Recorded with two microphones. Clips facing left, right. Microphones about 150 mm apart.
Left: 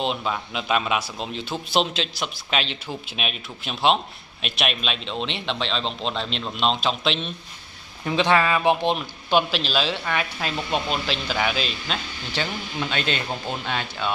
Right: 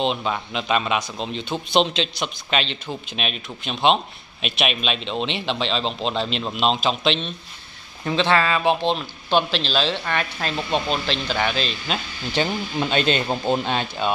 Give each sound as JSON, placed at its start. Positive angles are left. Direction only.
{"t": 0.0, "sound": "a man's voice", "side_deg": 0}
{"t": 8.2, "sound": "a man's voice", "side_deg": 15}
{"t": 12.8, "sound": "speech", "side_deg": -25}